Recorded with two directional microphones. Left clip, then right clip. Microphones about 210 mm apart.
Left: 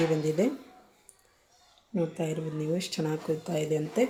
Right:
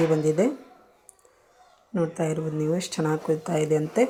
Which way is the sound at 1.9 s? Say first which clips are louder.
Right 5 dB; 10° right (ahead or behind).